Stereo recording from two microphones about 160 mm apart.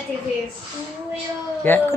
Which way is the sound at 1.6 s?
10° left (ahead or behind).